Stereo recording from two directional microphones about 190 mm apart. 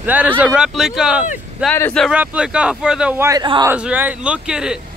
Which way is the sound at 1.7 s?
10° left (ahead or behind).